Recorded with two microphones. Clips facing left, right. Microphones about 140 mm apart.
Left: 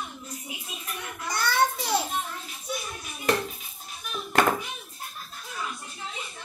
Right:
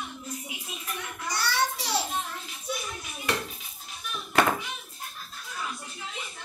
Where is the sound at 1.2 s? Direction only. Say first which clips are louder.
Left 4 dB; 50° left (ahead or behind).